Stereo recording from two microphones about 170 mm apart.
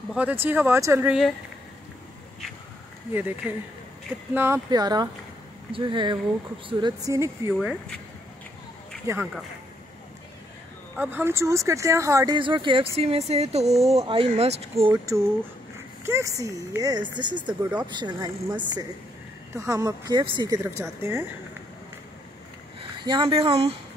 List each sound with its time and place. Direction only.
0.1 s speech: 10° right (ahead or behind)
3.1 s speech: 10° right (ahead or behind)
4.6 s speech: 25° right (ahead or behind)
9.0 s speech: 15° right (ahead or behind)
11.0 s speech: 10° right (ahead or behind)
12.4 s speech: 30° right (ahead or behind)
14.9 s speech: 15° right (ahead or behind)
23.0 s speech: 30° right (ahead or behind)